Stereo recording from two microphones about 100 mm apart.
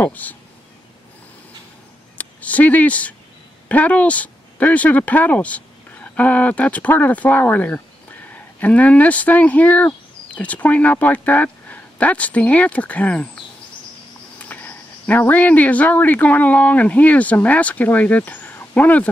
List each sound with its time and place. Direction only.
0.0 s speech: 15° left (ahead or behind)
2.1 s speech: 15° left (ahead or behind)
14.4 s speech: 20° left (ahead or behind)